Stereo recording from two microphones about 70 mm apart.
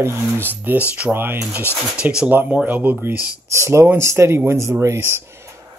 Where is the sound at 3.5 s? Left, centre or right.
Right.